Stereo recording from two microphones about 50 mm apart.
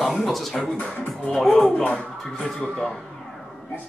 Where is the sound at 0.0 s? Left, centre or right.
Centre.